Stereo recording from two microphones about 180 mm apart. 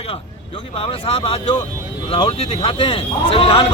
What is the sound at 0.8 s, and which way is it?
A man's voice, 35° left (ahead or behind).